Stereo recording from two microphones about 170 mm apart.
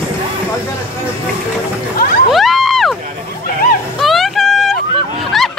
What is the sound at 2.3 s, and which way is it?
Crowd, centre (ahead or behind).